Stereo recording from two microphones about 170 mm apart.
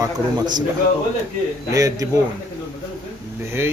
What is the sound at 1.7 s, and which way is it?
Speech, 20° right (ahead or behind).